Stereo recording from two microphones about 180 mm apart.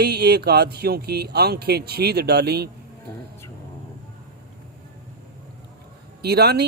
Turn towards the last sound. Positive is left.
turn(degrees=-65)  # may be behind; listen again after turning